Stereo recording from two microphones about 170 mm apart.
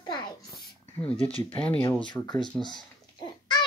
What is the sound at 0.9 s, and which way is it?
Speech, 5° left (ahead or behind).